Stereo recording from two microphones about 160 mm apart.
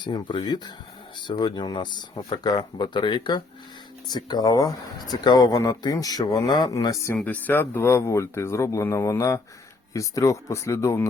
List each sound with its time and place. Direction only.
0.0 s speech: 25° left (ahead or behind)